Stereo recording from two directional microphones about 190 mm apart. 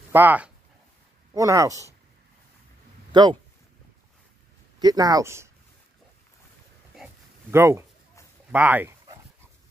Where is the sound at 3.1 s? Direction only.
25° right (ahead or behind).